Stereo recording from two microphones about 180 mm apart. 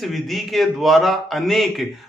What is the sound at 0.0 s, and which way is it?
A man's voice, centre (ahead or behind).